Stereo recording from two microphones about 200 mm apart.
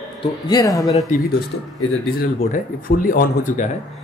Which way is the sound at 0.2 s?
20° left (ahead or behind).